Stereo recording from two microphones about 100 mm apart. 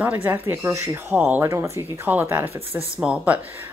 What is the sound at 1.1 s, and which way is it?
Speech, 15° right (ahead or behind).